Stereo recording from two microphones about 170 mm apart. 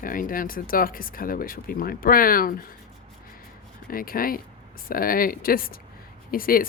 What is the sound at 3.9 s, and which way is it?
Speech, 55° left (ahead or behind).